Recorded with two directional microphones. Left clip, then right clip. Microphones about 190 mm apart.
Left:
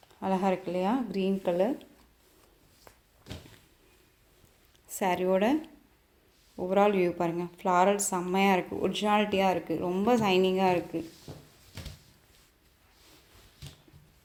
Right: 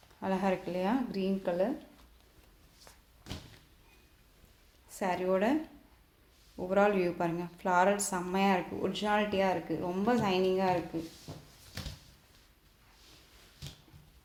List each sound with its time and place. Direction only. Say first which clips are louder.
0.2 s speech: left 3 dB; 30° left (ahead or behind)
3.3 s a sound: even; 10° right (ahead or behind)
4.9 s a woman's voice: left 4 dB; 40° left (ahead or behind)
6.6 s a woman's voice: left 3 dB; 30° left (ahead or behind)